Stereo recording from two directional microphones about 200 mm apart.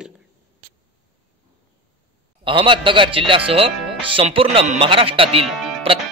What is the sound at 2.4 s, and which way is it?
A man's voice, 25° right (ahead or behind).